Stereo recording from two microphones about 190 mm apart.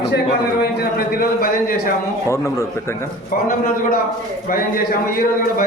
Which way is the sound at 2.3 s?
15° left (ahead or behind).